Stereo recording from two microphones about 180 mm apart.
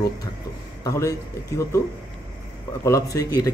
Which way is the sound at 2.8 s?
15° left (ahead or behind).